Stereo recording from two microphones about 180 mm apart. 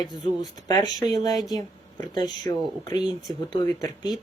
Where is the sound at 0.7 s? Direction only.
20° left (ahead or behind).